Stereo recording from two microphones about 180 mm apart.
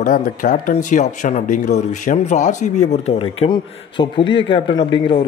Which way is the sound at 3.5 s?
25° left (ahead or behind).